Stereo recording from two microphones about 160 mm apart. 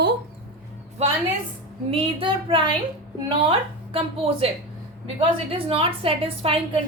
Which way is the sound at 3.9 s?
35° right (ahead or behind).